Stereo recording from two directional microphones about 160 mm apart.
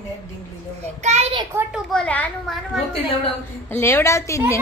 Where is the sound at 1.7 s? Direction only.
5° left (ahead or behind).